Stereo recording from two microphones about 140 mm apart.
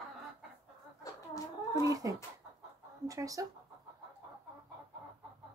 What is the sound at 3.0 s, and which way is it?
Speech, 25° right (ahead or behind).